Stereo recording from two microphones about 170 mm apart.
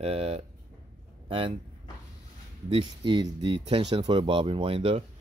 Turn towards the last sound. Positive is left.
turn(degrees=-35)  # may be behind; listen again after turning